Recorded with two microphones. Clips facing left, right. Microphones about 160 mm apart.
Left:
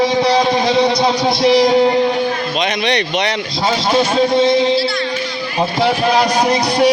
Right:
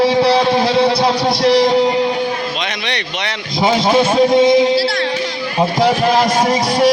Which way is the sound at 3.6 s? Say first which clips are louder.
Right 3 dB; 10° right (ahead or behind).